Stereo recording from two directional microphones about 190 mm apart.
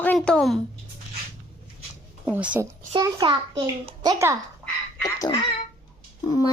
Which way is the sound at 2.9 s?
25° right (ahead or behind).